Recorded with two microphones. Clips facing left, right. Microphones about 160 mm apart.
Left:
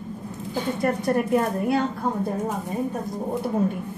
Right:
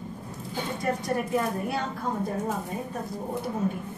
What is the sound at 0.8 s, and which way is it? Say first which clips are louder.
A woman's voice: left 5 dB; 60° left (ahead or behind).